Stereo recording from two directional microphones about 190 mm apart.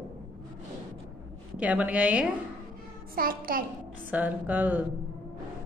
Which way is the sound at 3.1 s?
50° right (ahead or behind).